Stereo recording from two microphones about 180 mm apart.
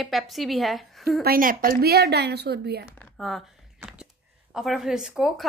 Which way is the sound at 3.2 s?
Centre (ahead or behind).